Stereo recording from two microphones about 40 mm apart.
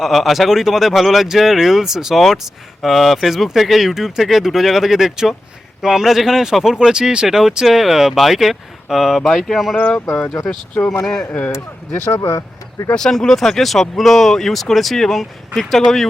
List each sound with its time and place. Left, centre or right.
0.0 s speech: centre
6.7 s speech: centre
7.3 s speech: centre
9.7 s speech: left
10.2 s speech: centre
11.3 s speech: left
11.9 s speech: left
13.0 s speech: centre